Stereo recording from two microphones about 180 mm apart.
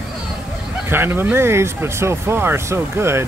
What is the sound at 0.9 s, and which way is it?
Speech, 10° right (ahead or behind).